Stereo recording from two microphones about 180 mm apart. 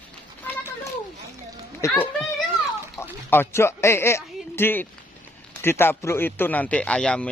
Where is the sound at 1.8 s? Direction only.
15° left (ahead or behind).